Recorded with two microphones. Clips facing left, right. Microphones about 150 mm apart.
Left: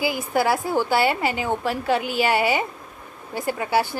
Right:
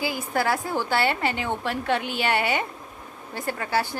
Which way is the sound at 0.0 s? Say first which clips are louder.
Left 4 dB; 10° left (ahead or behind).